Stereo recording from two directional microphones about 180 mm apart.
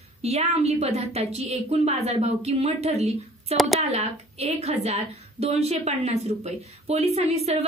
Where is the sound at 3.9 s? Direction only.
35° right (ahead or behind).